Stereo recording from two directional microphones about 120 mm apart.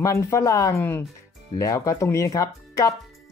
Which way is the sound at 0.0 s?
25° left (ahead or behind).